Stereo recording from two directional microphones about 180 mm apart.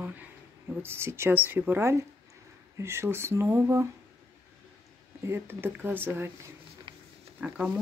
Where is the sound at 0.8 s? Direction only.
15° right (ahead or behind).